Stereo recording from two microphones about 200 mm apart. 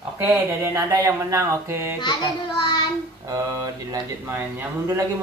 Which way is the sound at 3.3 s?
15° right (ahead or behind).